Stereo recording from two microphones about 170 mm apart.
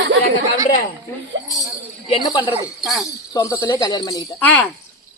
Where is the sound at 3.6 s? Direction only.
25° left (ahead or behind).